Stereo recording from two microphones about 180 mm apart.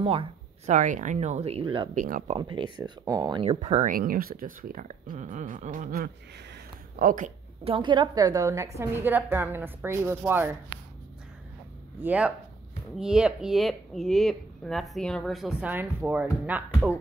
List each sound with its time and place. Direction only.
0.0 s speech: 35° right (ahead or behind)
2.0 s speech: 50° right (ahead or behind)
2.2 s speech: 25° right (ahead or behind)
3.9 s speech: 50° right (ahead or behind)
7.6 s a woman's voice: 30° right (ahead or behind); by 10.5 s 10° right (ahead or behind)
12.0 s a woman's voice: 10° right (ahead or behind)